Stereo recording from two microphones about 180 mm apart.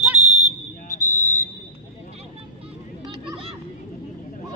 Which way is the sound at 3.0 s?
25° right (ahead or behind).